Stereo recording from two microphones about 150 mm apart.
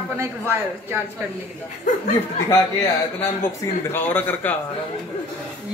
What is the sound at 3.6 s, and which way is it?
Speech, 15° left (ahead or behind).